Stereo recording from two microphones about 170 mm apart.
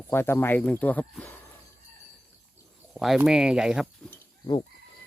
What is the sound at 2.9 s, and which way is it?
Speech, centre (ahead or behind).